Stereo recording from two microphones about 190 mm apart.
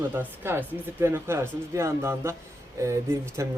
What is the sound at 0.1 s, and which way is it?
Speech, 10° right (ahead or behind).